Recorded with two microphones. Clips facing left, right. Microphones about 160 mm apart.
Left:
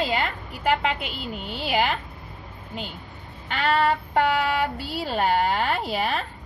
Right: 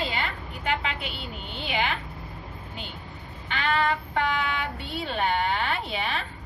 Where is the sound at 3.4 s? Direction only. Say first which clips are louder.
Left 4 dB; 40° left (ahead or behind).